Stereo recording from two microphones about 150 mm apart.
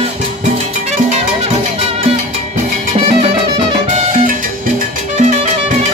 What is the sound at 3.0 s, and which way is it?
Music, 45° right (ahead or behind).